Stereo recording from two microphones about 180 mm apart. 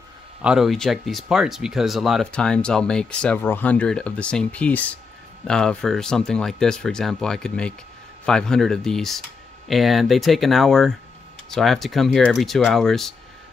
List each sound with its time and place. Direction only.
0.4 s speech: 5° right (ahead or behind)